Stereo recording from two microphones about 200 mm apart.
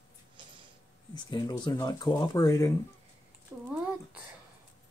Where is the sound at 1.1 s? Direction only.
20° left (ahead or behind).